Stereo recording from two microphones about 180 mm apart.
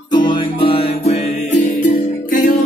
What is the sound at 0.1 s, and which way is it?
Music, 25° left (ahead or behind).